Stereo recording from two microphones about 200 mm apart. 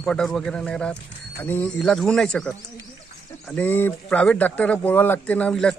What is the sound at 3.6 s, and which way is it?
Speech, 10° left (ahead or behind).